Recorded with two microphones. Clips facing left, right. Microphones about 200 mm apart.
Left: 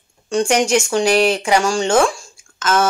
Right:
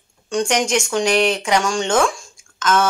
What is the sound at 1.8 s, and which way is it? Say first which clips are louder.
Speech: left 3 dB; 30° left (ahead or behind).